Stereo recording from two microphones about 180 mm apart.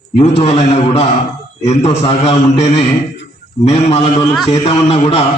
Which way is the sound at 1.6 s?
35° left (ahead or behind).